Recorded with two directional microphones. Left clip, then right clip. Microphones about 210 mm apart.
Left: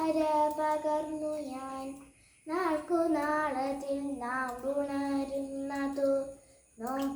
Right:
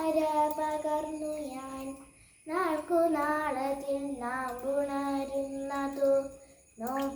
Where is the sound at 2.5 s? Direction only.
5° left (ahead or behind).